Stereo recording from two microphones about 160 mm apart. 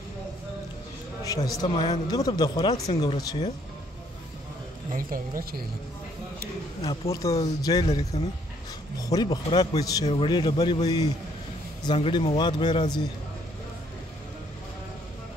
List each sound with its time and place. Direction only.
1.2 s speech: 20° left (ahead or behind)
4.9 s speech: 60° right (ahead or behind)
7.1 s speech: 20° left (ahead or behind)
10.0 s a man's voice: 35° left (ahead or behind)